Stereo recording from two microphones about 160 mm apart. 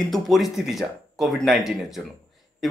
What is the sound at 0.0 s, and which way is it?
Speech, centre (ahead or behind).